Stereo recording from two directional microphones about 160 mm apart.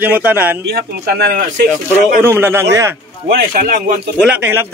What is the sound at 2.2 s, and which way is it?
Speech, 15° right (ahead or behind).